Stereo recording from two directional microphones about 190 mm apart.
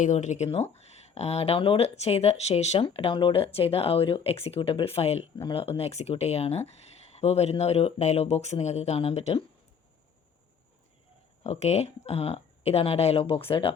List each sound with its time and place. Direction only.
0.0 s speech: 40° left (ahead or behind)
11.4 s speech: 35° left (ahead or behind)